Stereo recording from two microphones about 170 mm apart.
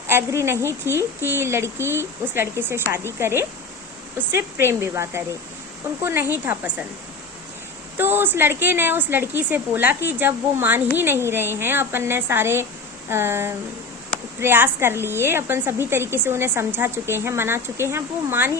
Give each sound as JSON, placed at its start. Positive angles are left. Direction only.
{"t": 0.1, "sound": "a woman's voice", "side_deg": -15}
{"t": 7.9, "sound": "a woman's voice", "side_deg": -10}